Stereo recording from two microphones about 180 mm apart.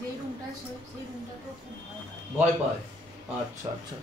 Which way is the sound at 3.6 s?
15° right (ahead or behind).